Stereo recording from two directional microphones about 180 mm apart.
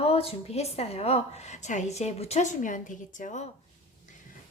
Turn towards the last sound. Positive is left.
turn(degrees=45)  # may be behind; listen again after turning